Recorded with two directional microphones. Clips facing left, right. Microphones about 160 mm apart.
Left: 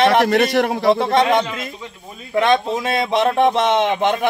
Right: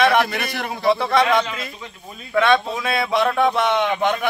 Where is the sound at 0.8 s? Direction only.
25° left (ahead or behind).